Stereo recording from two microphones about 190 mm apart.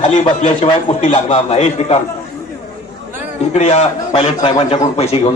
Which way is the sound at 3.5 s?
35° left (ahead or behind).